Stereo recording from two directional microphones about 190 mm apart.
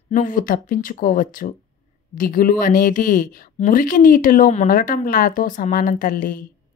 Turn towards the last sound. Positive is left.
turn(degrees=45)  # may be behind; listen again after turning